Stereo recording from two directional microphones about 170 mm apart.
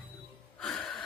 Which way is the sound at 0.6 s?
Centre (ahead or behind).